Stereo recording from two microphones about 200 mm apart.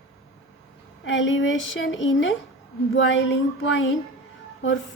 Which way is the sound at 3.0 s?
65° left (ahead or behind).